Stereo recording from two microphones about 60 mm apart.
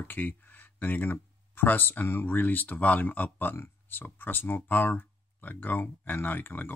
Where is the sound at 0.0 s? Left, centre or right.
Left.